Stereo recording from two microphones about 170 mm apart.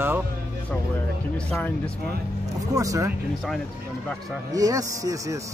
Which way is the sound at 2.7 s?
20° right (ahead or behind).